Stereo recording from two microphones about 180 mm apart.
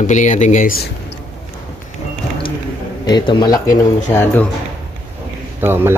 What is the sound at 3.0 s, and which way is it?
Speech, 25° left (ahead or behind).